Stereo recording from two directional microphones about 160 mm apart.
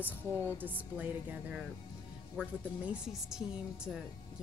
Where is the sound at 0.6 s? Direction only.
10° right (ahead or behind).